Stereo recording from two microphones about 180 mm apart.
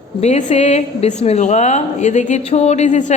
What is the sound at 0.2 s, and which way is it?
A woman's voice, 35° left (ahead or behind).